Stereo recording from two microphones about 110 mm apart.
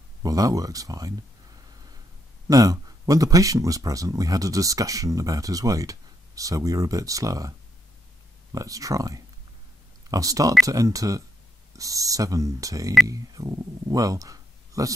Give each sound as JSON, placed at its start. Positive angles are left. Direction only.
{"t": 0.2, "sound": "speech", "side_deg": -30}